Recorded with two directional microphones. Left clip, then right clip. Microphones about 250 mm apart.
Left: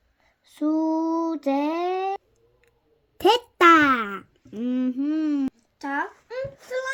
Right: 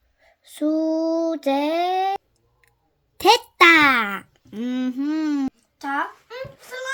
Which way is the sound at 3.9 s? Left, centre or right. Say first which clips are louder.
Right 3 dB; centre.